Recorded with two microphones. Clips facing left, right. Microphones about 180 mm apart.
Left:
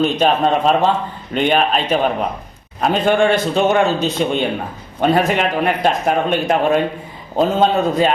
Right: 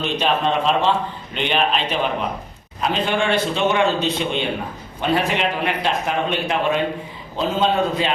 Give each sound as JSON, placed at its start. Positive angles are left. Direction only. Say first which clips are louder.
{"t": 0.0, "sound": "a man's voice", "louder": "left 5 dB", "side_deg": 45}